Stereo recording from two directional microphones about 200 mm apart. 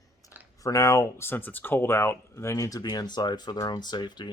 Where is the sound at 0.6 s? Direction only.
15° left (ahead or behind).